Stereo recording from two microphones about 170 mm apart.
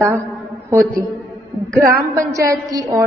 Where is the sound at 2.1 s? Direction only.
20° right (ahead or behind).